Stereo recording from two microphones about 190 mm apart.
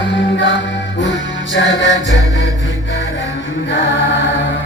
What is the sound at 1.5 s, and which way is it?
Music, 75° left (ahead or behind).